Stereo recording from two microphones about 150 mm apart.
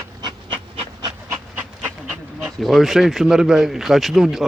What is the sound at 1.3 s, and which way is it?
Dog, 10° right (ahead or behind).